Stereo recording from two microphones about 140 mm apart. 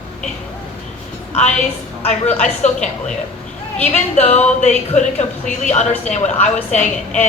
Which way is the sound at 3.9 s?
50° left (ahead or behind).